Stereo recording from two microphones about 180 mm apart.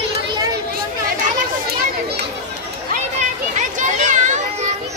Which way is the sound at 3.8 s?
45° right (ahead or behind).